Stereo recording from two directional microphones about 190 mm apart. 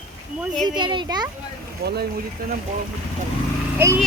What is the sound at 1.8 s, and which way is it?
Speech, 55° right (ahead or behind).